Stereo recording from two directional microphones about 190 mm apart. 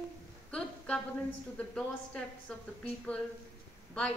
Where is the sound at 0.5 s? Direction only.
5° left (ahead or behind).